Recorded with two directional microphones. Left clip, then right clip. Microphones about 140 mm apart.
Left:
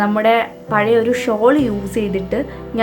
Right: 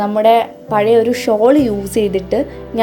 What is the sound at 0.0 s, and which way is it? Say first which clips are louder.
A woman's voice: right 3 dB; 15° right (ahead or behind).